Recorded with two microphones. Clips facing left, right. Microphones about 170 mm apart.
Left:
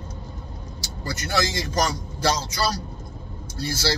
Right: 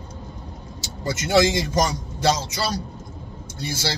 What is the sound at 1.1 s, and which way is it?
Speech, 20° right (ahead or behind).